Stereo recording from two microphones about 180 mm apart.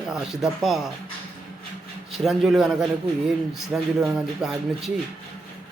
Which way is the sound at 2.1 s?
Centre (ahead or behind).